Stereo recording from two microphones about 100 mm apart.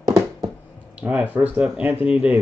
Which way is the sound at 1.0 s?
15° right (ahead or behind).